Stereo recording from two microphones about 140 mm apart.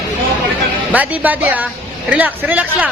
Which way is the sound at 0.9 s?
10° right (ahead or behind).